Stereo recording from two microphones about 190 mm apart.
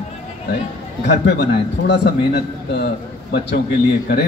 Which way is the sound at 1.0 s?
60° left (ahead or behind).